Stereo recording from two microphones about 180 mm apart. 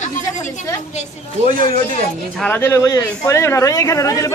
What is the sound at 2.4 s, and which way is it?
Speech, 10° left (ahead or behind).